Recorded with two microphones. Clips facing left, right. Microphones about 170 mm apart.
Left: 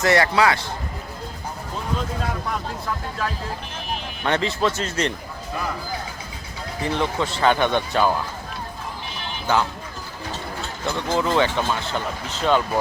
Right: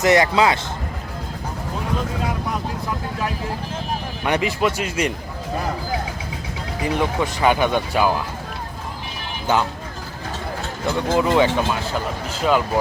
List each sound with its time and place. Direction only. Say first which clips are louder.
0.0 s speech: right 2 dB; 20° right (ahead or behind)
4.2 s speech: right 1 dB; 10° right (ahead or behind)
6.8 s speech: right 2 dB; 10° right (ahead or behind)
9.5 s speech: right 1 dB; 20° right (ahead or behind)
10.9 s speech: right 3 dB; 15° right (ahead or behind)